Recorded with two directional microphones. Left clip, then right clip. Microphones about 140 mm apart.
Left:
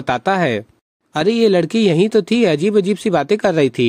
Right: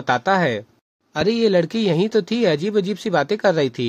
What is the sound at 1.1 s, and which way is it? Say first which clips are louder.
Speech: left 3 dB; 35° left (ahead or behind).